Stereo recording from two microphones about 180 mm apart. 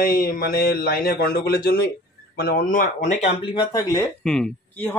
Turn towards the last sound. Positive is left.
turn(degrees=5)  # may be behind; listen again after turning